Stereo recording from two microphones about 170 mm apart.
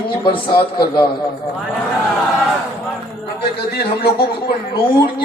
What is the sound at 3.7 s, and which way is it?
Speech, 70° left (ahead or behind).